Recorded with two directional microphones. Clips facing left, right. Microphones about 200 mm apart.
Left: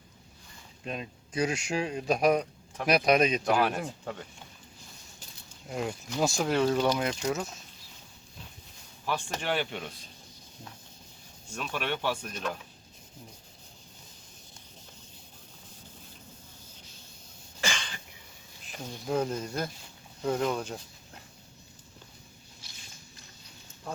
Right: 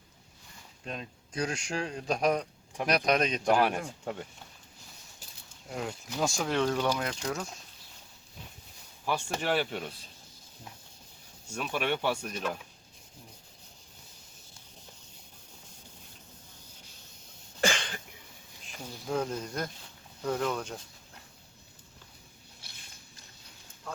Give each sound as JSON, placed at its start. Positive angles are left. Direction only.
{"t": 0.9, "sound": "speech", "side_deg": 5}
{"t": 3.5, "sound": "speech", "side_deg": -10}
{"t": 5.6, "sound": "speech", "side_deg": 0}
{"t": 9.0, "sound": "speech", "side_deg": -5}
{"t": 11.4, "sound": "speech", "side_deg": -10}
{"t": 17.6, "sound": "cough", "side_deg": -55}
{"t": 19.0, "sound": "speech", "side_deg": 5}
{"t": 22.6, "sound": "a sound", "side_deg": -60}